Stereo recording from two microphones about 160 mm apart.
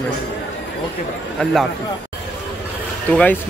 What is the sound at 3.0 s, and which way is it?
Speech, 10° left (ahead or behind).